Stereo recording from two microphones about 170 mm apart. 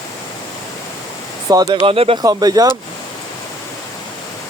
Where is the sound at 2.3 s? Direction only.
20° right (ahead or behind).